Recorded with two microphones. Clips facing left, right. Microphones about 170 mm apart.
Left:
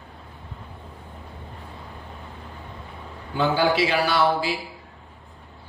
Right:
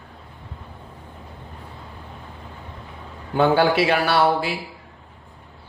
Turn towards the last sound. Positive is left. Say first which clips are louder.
# right 2 dB
turn(degrees=-55)  # may be behind; listen again after turning